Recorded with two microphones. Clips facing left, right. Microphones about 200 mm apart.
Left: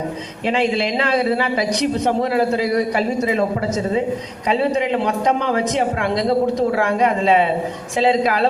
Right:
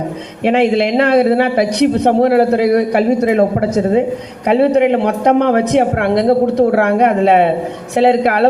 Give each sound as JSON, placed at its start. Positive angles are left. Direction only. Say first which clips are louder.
{"t": 0.4, "sound": "a man's voice", "louder": "right 7 dB", "side_deg": -60}